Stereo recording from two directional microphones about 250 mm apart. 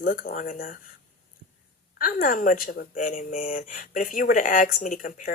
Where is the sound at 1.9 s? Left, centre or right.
Left.